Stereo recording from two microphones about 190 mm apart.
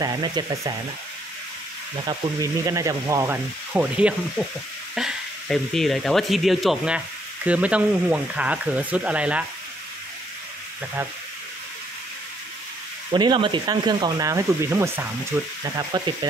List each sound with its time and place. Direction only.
0.0 s speech: 20° right (ahead or behind)
2.0 s speech: 20° right (ahead or behind)
13.1 s speech: 25° right (ahead or behind)
15.9 s speech: 20° right (ahead or behind)